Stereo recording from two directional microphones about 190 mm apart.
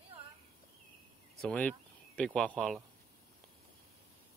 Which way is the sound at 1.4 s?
5° left (ahead or behind).